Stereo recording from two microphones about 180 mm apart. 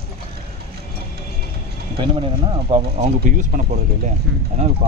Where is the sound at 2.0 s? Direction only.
30° right (ahead or behind).